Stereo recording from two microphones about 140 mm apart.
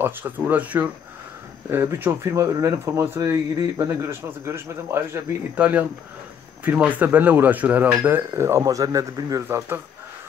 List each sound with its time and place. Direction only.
0.0 s speech: 15° right (ahead or behind)